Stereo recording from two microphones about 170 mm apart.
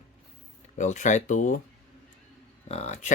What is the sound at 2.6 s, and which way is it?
Speech, 40° left (ahead or behind).